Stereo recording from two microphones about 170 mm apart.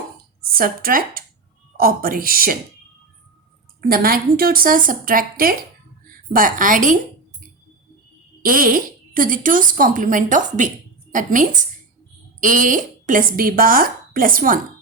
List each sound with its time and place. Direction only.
0.4 s speech: 60° right (ahead or behind)
3.8 s a woman's voice: 60° right (ahead or behind)
8.4 s a woman's voice: 55° right (ahead or behind)